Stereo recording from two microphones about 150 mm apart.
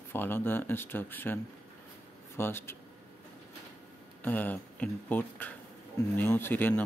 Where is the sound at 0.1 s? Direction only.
15° left (ahead or behind).